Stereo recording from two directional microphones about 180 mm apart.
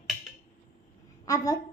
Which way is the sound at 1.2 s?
20° left (ahead or behind).